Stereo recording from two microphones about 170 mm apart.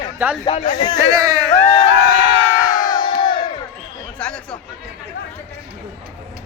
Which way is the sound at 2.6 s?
25° left (ahead or behind).